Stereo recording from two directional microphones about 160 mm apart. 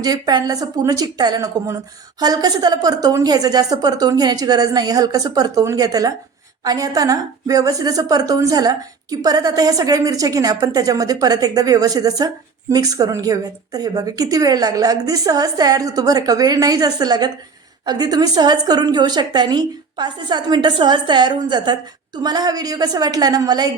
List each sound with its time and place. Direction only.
0.0 s a woman's voice: 25° right (ahead or behind)